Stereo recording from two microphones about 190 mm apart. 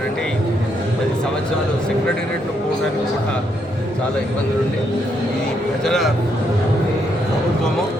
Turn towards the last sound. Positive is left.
turn(degrees=0)  # may be behind; listen again after turning